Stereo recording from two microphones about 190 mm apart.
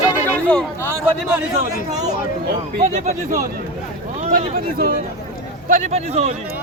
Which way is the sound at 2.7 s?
40° right (ahead or behind).